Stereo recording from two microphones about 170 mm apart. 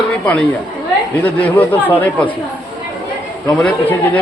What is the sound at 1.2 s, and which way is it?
Speech, 10° left (ahead or behind).